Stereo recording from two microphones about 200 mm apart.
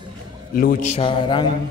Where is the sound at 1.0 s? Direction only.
25° left (ahead or behind).